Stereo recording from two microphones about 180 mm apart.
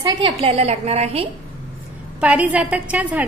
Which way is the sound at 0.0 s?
25° right (ahead or behind).